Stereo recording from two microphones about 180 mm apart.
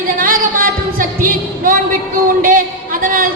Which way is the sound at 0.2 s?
50° right (ahead or behind).